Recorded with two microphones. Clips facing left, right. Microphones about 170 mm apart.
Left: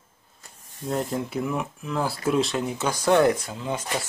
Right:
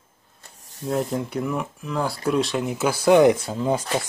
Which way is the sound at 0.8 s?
Centre (ahead or behind).